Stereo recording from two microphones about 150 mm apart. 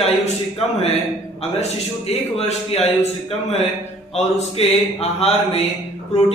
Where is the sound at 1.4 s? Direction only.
45° left (ahead or behind).